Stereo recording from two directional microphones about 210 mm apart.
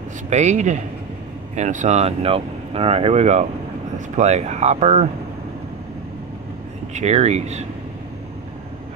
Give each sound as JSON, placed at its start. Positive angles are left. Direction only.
{"t": 0.3, "sound": "speech", "side_deg": -35}
{"t": 6.9, "sound": "speech", "side_deg": -30}